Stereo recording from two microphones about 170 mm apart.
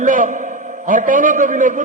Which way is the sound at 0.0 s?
50° right (ahead or behind).